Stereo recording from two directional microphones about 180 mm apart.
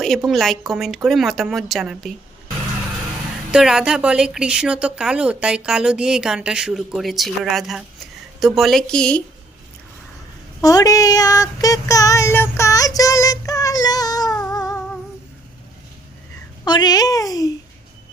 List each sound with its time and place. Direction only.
0.0 s a woman's voice: centre (ahead or behind)
3.5 s a woman's voice: 5° right (ahead or behind)
10.6 s child singing: 20° left (ahead or behind)
14.5 s humming: 20° left (ahead or behind)
16.6 s child singing: 25° left (ahead or behind)